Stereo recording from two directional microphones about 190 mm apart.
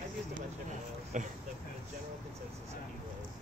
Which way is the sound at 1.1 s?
40° right (ahead or behind).